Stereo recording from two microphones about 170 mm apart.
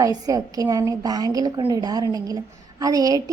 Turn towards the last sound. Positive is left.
turn(degrees=-20)  # may be behind; listen again after turning